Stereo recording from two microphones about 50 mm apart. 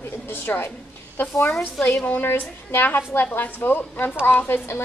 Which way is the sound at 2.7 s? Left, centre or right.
Left.